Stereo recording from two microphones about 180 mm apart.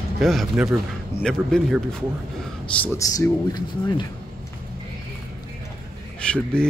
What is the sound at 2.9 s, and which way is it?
Speech, 20° left (ahead or behind).